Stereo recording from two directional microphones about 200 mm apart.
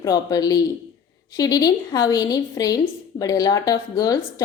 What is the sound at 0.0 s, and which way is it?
A woman's voice, 20° left (ahead or behind).